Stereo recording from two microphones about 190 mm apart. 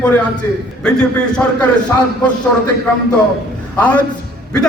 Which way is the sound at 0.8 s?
5° left (ahead or behind).